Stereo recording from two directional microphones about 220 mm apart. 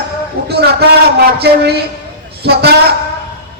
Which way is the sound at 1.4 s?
45° right (ahead or behind).